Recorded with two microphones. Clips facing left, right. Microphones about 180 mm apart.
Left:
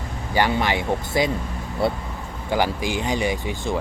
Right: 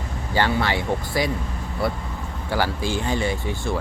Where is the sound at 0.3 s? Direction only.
15° left (ahead or behind).